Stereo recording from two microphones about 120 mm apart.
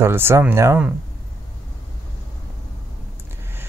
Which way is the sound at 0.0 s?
20° right (ahead or behind).